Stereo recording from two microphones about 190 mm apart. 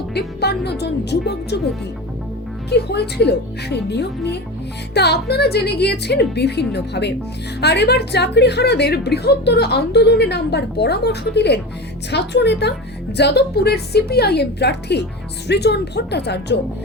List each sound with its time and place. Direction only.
0.1 s speech: 60° left (ahead or behind)
2.6 s speech: 60° left (ahead or behind)